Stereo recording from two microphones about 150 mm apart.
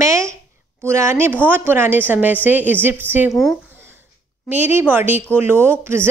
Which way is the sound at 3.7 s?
15° right (ahead or behind).